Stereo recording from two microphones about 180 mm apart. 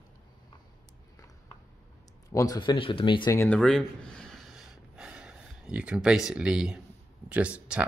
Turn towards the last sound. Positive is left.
turn(degrees=-5)  # may be behind; listen again after turning